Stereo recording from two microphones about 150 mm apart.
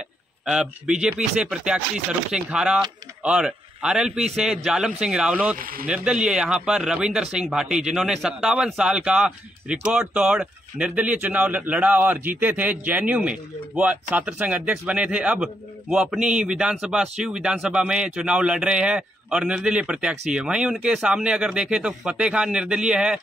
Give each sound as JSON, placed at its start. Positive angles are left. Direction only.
{"t": 0.5, "sound": "a man's voice", "side_deg": -5}
{"t": 5.6, "sound": "speech", "side_deg": -75}
{"t": 5.9, "sound": "a man's voice", "side_deg": -5}